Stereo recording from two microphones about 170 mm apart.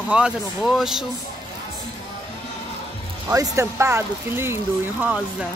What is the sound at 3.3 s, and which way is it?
Speech, 20° right (ahead or behind).